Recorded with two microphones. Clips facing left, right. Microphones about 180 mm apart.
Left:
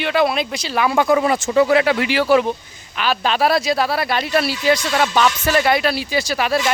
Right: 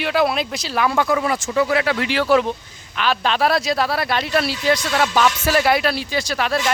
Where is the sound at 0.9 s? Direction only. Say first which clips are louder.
Left 4 dB; 25° left (ahead or behind).